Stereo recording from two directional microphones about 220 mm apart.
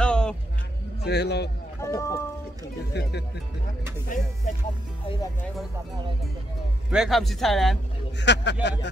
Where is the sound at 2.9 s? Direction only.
50° left (ahead or behind).